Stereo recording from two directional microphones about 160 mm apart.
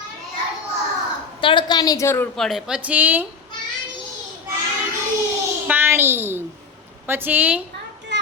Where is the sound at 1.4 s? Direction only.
30° left (ahead or behind); by 2.3 s 15° left (ahead or behind).